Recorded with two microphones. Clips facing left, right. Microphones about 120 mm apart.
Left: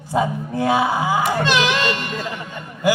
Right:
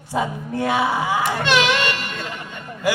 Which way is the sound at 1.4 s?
30° left (ahead or behind).